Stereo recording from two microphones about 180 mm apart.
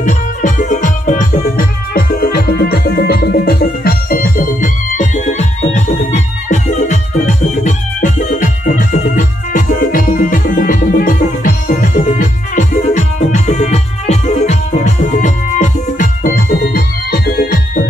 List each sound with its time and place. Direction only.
0.0 s music: 45° left (ahead or behind)